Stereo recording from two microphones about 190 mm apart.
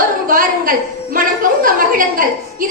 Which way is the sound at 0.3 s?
45° right (ahead or behind).